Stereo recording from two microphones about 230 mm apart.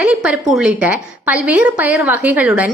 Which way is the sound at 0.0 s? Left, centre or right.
Centre.